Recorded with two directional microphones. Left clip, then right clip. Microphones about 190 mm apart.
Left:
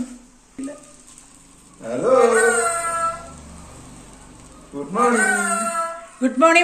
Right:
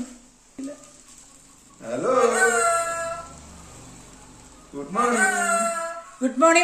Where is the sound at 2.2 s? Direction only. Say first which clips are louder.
Left 3 dB; 10° right (ahead or behind).